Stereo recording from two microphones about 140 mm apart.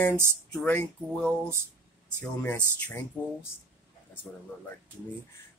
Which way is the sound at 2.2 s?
15° left (ahead or behind).